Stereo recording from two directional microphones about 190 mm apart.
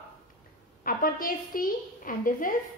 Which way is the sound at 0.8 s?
50° left (ahead or behind).